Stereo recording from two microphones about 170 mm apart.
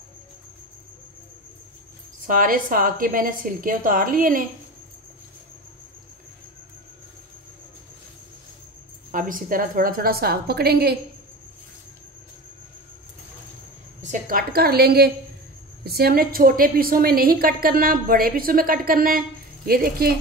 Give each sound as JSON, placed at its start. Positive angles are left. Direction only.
{"t": 2.2, "sound": "a woman's voice", "side_deg": -55}
{"t": 9.1, "sound": "a woman's voice", "side_deg": -55}
{"t": 14.1, "sound": "a woman's voice", "side_deg": -60}